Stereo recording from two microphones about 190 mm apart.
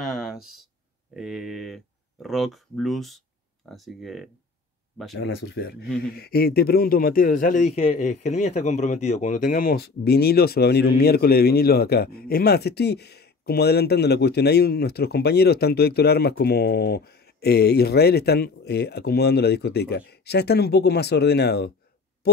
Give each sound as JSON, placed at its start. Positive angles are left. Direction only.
{"t": 0.0, "sound": "a sound", "side_deg": 0}
{"t": 1.1, "sound": "speech", "side_deg": -5}
{"t": 5.1, "sound": "speech", "side_deg": 60}